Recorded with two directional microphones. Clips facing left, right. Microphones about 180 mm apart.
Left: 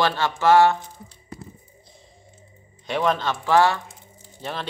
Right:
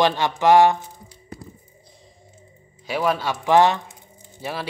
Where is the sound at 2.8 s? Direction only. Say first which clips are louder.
Even; 5° right (ahead or behind).